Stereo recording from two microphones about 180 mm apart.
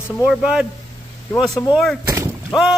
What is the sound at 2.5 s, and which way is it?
Speech, centre (ahead or behind).